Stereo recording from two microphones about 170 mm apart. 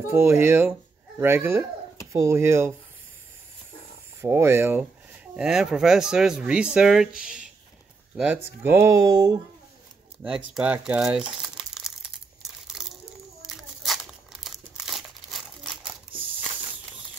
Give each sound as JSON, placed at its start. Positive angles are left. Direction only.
{"t": 0.1, "sound": "speech", "side_deg": -15}
{"t": 4.2, "sound": "speech", "side_deg": -15}
{"t": 10.2, "sound": "speech", "side_deg": -5}
{"t": 12.7, "sound": "a sound", "side_deg": 0}
{"t": 13.4, "sound": "crumpling", "side_deg": 0}